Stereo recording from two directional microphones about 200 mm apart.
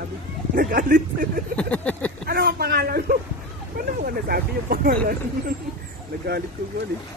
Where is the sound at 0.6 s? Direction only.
45° right (ahead or behind).